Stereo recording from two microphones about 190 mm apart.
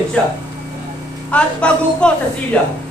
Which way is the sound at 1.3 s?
5° left (ahead or behind).